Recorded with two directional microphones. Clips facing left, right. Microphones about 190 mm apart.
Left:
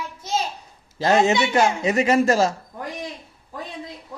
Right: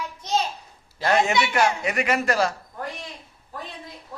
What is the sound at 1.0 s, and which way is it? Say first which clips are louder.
A man's voice: left 3 dB; 25° left (ahead or behind).